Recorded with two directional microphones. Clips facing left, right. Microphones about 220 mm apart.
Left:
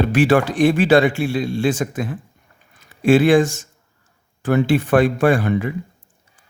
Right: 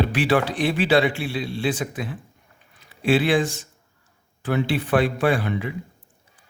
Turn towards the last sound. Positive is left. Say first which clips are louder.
# left 5 dB
turn(degrees=50)  # may be behind; listen again after turning